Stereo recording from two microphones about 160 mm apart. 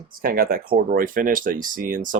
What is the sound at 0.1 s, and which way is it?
Speech, 65° right (ahead or behind).